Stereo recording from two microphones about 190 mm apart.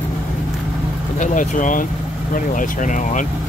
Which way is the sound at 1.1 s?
40° left (ahead or behind).